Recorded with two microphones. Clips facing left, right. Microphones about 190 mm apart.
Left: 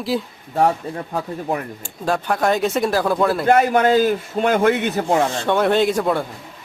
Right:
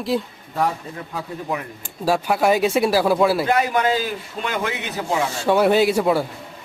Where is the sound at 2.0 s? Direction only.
5° right (ahead or behind).